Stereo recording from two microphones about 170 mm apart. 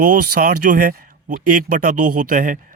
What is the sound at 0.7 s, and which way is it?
Speech, 50° right (ahead or behind).